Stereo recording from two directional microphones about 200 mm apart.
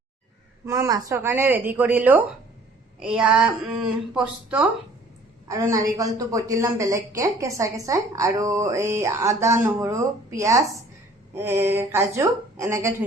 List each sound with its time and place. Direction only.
0.6 s a woman's voice: 15° right (ahead or behind)